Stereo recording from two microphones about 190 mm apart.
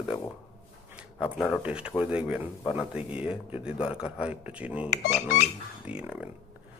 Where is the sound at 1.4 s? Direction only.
5° right (ahead or behind).